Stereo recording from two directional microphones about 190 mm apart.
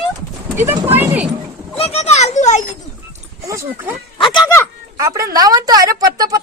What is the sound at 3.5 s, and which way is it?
Speech, 15° right (ahead or behind).